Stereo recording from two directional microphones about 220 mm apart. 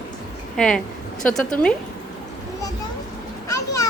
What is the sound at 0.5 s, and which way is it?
A woman's voice, 5° left (ahead or behind).